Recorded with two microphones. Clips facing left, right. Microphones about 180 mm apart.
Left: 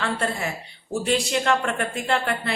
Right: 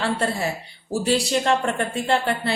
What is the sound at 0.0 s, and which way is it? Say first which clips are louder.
A woman's voice: right 3 dB; 30° right (ahead or behind).